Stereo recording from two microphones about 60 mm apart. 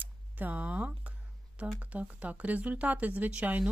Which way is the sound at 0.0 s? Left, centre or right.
Right.